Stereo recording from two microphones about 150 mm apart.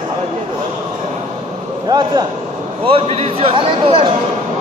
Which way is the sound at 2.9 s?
40° right (ahead or behind).